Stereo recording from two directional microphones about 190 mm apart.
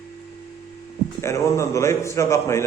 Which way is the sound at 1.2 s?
15° left (ahead or behind).